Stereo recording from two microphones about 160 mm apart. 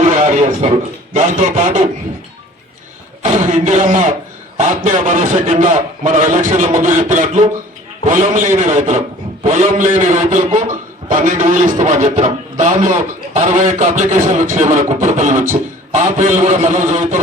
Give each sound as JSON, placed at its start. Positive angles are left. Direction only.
{"t": 0.0, "sound": "a sound", "side_deg": -50}
{"t": 1.1, "sound": "a man's voice", "side_deg": -55}
{"t": 3.3, "sound": "a man's voice", "side_deg": -45}